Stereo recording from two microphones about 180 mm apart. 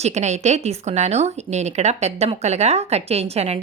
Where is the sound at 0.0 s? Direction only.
40° right (ahead or behind).